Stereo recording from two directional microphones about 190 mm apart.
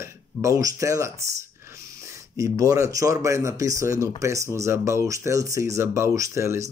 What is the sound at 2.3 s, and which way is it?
Speech, 15° right (ahead or behind).